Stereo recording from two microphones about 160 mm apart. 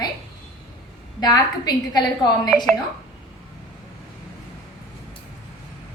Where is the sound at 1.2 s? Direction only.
25° left (ahead or behind).